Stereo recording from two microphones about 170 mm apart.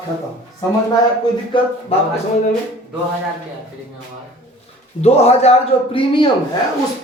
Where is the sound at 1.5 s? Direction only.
30° left (ahead or behind).